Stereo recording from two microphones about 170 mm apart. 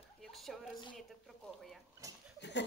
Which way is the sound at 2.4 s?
90° left.